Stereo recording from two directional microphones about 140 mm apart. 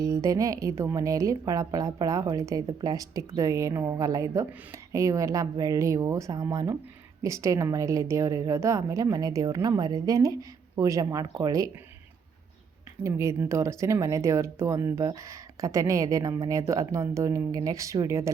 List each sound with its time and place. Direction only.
0.0 s a woman's voice: 25° right (ahead or behind)
13.0 s a woman's voice: 20° right (ahead or behind)